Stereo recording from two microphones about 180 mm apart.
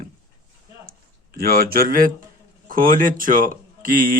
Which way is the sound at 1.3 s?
55° right (ahead or behind).